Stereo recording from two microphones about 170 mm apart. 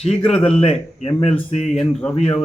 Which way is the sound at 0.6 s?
40° left (ahead or behind).